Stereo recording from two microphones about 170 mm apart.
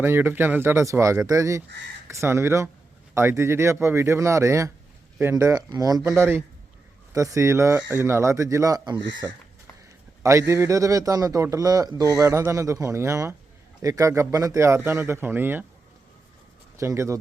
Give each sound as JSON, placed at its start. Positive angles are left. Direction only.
{"t": 0.0, "sound": "speech", "side_deg": -15}
{"t": 16.7, "sound": "speech", "side_deg": -15}